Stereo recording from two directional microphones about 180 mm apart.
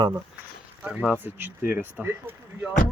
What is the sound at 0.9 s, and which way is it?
Speech, 5° right (ahead or behind).